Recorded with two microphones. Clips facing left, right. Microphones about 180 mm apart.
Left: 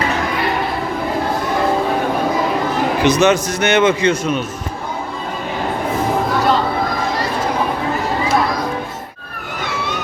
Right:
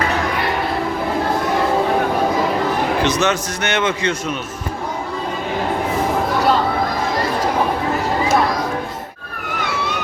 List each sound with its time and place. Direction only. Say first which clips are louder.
3.0 s a man's voice: left 5 dB; 10° left (ahead or behind)